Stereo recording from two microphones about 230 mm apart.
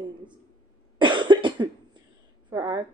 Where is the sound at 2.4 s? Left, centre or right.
Centre.